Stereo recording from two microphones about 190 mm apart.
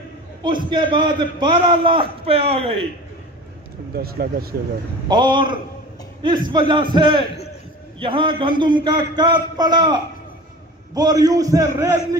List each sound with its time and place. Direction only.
0.4 s a man's voice: 25° right (ahead or behind)
3.9 s speech: 55° right (ahead or behind)
5.0 s a man's voice: 25° right (ahead or behind)